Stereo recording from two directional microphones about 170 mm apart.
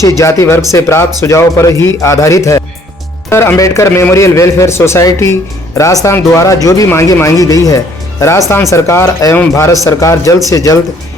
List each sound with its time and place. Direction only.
0.2 s speech: 20° left (ahead or behind)